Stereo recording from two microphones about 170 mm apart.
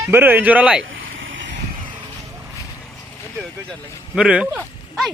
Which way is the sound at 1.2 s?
90° right.